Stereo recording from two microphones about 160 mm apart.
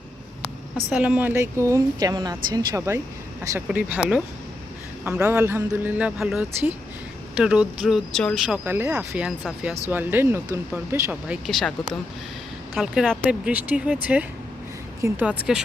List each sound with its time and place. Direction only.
0.9 s speech: 5° right (ahead or behind)
3.8 s speech: 10° right (ahead or behind)
5.2 s speech: 20° right (ahead or behind); by 8.4 s 5° left (ahead or behind)
8.4 s speech: 10° right (ahead or behind)
11.3 s speech: centre (ahead or behind)
12.7 s speech: 5° right (ahead or behind)